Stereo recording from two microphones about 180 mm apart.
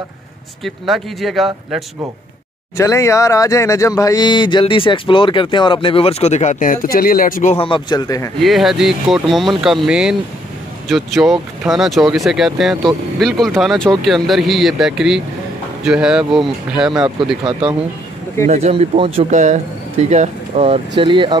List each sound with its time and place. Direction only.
0.7 s speech: centre (ahead or behind)
2.8 s speech: 15° left (ahead or behind); by 7.5 s 50° left (ahead or behind)
7.5 s speech: 30° left (ahead or behind)
8.4 s speech: centre (ahead or behind)
18.5 s speech: 35° right (ahead or behind)